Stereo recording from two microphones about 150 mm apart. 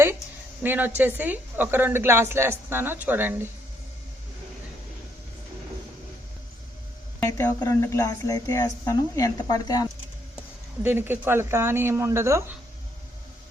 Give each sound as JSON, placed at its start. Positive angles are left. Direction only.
{"t": 0.6, "sound": "a woman's voice", "side_deg": -10}
{"t": 7.2, "sound": "a woman's voice", "side_deg": 20}
{"t": 10.8, "sound": "a woman's voice", "side_deg": -15}